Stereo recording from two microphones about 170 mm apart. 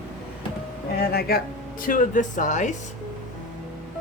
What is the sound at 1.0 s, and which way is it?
Speech, 65° left (ahead or behind).